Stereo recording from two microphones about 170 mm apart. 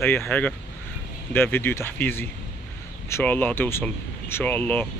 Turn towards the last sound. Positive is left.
turn(degrees=10)  # may be behind; listen again after turning